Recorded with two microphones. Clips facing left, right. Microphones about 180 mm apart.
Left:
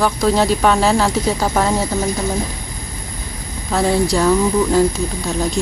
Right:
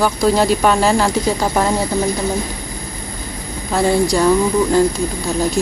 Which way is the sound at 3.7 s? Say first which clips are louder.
Right 1 dB; centre (ahead or behind).